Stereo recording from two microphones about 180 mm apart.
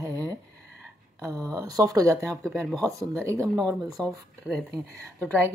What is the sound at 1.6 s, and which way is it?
Speech, 20° right (ahead or behind).